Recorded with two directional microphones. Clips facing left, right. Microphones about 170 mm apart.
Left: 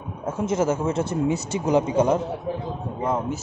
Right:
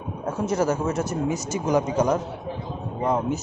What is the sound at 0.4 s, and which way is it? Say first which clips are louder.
A man's voice: left 1 dB; 25° left (ahead or behind).